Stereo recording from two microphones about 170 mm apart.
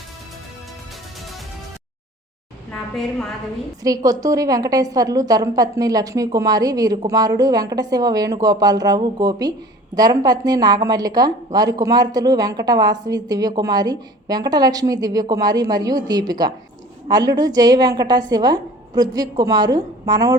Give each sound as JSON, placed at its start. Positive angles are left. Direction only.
{"t": 2.7, "sound": "a woman's voice", "side_deg": 5}
{"t": 3.8, "sound": "a woman's voice", "side_deg": -20}